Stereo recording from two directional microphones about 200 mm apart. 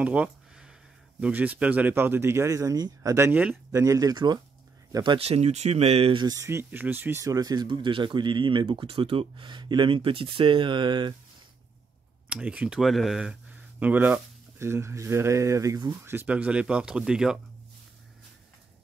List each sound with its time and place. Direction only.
0.0 s a sound: 5° right (ahead or behind)
1.2 s speech: 10° right (ahead or behind)
12.3 s speech: 5° right (ahead or behind)